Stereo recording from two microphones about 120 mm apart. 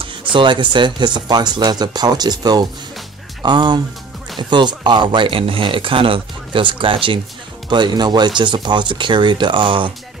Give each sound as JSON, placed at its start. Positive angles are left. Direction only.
{"t": 0.0, "sound": "speech", "side_deg": -45}